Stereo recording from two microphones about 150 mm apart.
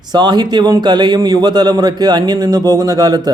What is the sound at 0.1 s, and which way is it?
Speech, 30° right (ahead or behind).